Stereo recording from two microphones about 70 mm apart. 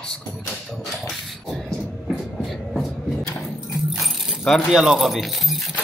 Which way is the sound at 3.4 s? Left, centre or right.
Centre.